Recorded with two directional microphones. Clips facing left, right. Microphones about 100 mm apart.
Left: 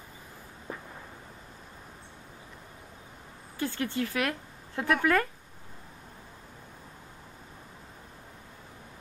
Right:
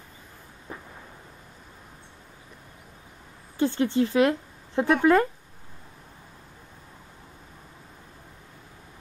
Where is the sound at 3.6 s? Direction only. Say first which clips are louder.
Right 8 dB; 25° right (ahead or behind).